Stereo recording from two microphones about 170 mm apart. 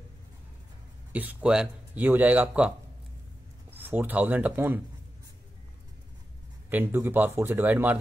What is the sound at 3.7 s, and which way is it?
Speech, 10° right (ahead or behind).